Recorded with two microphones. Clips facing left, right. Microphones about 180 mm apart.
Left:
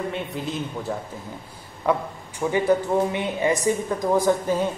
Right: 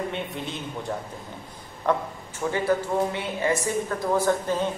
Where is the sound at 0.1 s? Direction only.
Centre (ahead or behind).